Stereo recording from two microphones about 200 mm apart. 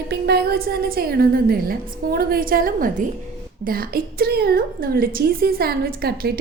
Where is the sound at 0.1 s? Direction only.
55° right (ahead or behind).